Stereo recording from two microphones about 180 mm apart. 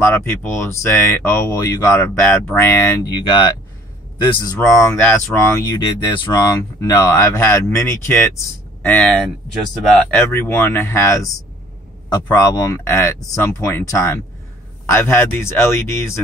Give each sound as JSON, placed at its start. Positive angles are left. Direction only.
{"t": 0.0, "sound": "speech", "side_deg": 15}
{"t": 4.6, "sound": "speech", "side_deg": 15}